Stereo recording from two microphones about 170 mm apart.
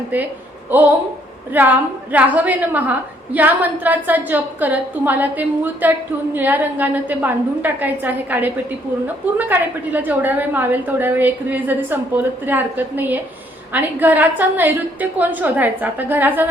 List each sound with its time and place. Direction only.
0.7 s a woman's voice: 10° right (ahead or behind)